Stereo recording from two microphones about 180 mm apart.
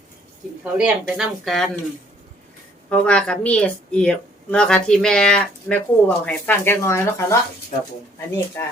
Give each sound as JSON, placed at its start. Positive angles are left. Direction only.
{"t": 0.6, "sound": "speech", "side_deg": -5}
{"t": 2.9, "sound": "speech", "side_deg": 5}
{"t": 8.6, "sound": "speech", "side_deg": 15}